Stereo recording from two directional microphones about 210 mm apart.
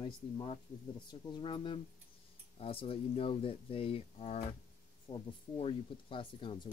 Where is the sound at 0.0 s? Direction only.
25° left (ahead or behind).